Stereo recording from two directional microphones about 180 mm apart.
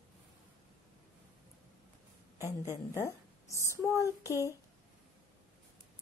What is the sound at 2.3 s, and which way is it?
Speech, 15° right (ahead or behind).